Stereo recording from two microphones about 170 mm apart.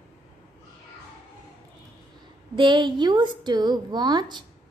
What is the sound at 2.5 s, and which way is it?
A woman's voice, 25° right (ahead or behind).